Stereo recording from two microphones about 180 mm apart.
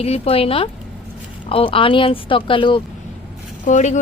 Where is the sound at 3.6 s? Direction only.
40° left (ahead or behind).